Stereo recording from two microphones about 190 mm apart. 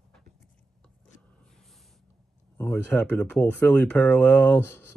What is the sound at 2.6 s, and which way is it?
Speech, 10° left (ahead or behind).